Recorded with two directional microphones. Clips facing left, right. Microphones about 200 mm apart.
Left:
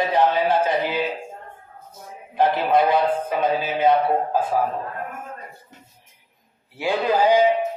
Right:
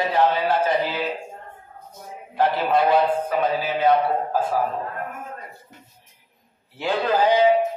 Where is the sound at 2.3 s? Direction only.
20° left (ahead or behind).